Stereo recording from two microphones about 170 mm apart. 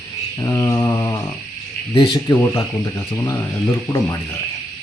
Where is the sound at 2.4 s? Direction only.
15° left (ahead or behind).